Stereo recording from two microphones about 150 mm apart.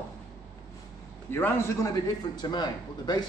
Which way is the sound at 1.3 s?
15° left (ahead or behind).